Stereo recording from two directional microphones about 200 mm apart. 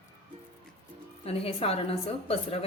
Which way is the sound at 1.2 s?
30° left (ahead or behind).